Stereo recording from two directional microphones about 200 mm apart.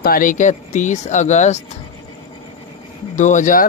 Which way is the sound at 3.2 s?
40° left (ahead or behind).